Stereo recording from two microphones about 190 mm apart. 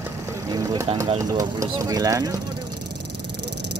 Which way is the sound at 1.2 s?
20° right (ahead or behind).